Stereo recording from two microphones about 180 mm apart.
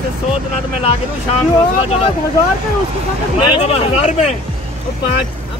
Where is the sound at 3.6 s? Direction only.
35° left (ahead or behind).